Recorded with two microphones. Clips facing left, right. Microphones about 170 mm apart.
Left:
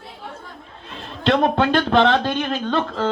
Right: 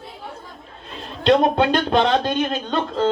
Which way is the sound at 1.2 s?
15° right (ahead or behind).